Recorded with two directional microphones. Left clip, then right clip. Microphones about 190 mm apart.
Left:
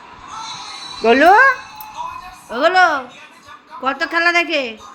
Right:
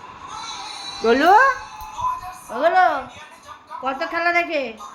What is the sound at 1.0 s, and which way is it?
A woman's voice, 15° left (ahead or behind).